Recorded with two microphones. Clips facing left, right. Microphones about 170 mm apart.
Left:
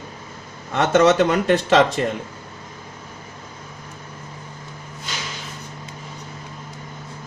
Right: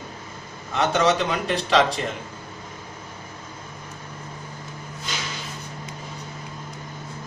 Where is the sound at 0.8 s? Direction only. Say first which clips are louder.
Left 5 dB; 55° left (ahead or behind).